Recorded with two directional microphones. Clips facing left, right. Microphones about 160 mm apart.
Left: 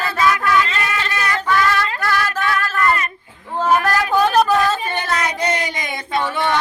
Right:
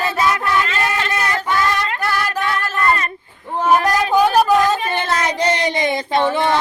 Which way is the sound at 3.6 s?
20° right (ahead or behind).